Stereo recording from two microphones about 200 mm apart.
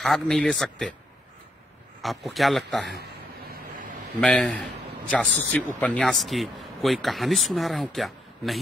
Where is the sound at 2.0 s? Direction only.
Centre (ahead or behind).